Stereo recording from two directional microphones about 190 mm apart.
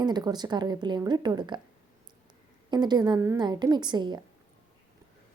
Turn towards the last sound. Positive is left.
turn(degrees=-25)  # may be behind; listen again after turning